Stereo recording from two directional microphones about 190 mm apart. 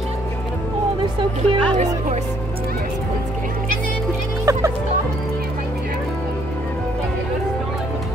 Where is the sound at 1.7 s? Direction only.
35° right (ahead or behind).